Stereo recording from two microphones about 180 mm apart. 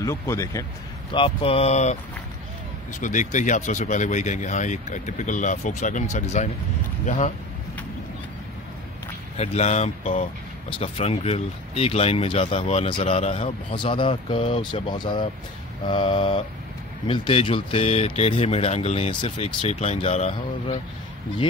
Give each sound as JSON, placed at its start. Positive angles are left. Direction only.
{"t": 0.0, "sound": "speech", "side_deg": 15}
{"t": 1.1, "sound": "speech", "side_deg": 30}
{"t": 3.0, "sound": "speech", "side_deg": 45}
{"t": 9.4, "sound": "speech", "side_deg": 40}
{"t": 15.9, "sound": "mantra", "side_deg": 30}
{"t": 17.1, "sound": "speech", "side_deg": 30}